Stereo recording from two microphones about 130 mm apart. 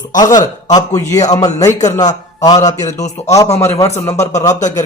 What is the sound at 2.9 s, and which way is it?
Speech, 65° left (ahead or behind).